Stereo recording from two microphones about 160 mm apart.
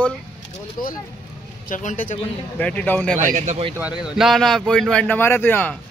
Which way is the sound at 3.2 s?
50° right (ahead or behind).